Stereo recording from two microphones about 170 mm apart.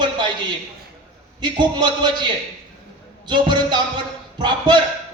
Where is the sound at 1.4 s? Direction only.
25° right (ahead or behind).